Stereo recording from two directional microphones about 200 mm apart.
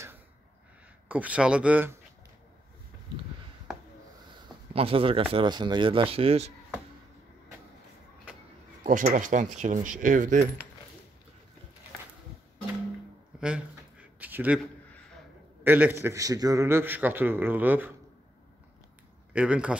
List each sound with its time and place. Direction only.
1.0 s a man's voice: 5° right (ahead or behind)
4.7 s speech: 30° right (ahead or behind)
8.8 s speech: 40° right (ahead or behind)
13.4 s a sound: 5° right (ahead or behind)
15.6 s a man's voice: 10° right (ahead or behind)
19.3 s a man's voice: 5° right (ahead or behind)